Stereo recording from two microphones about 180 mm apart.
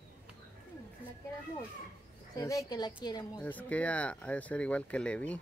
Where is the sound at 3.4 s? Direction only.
10° left (ahead or behind).